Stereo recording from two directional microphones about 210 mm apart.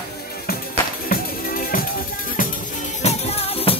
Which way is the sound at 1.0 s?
45° left (ahead or behind).